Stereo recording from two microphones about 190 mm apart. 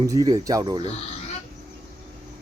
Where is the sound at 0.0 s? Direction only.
20° right (ahead or behind).